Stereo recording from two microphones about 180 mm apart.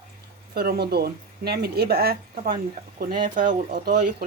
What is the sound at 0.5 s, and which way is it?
Speech, 60° right (ahead or behind).